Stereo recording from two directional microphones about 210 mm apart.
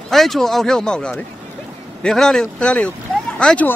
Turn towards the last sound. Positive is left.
turn(degrees=5)  # may be behind; listen again after turning